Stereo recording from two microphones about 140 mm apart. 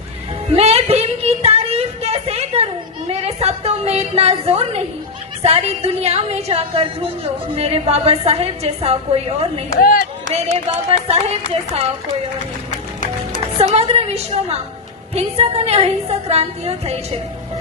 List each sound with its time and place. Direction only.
0.5 s a sound: 45° right (ahead or behind)
5.4 s a woman's voice: 50° right (ahead or behind)
9.8 s speech: 90° left
11.1 s a woman's voice: 50° right (ahead or behind)
13.6 s a woman's voice: 45° right (ahead or behind)